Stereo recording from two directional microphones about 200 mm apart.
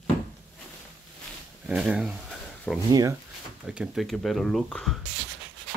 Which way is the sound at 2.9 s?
15° right (ahead or behind).